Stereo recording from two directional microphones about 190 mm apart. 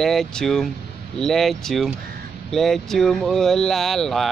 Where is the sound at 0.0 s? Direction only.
Centre (ahead or behind).